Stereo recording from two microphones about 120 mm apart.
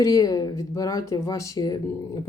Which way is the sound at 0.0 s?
30° left (ahead or behind).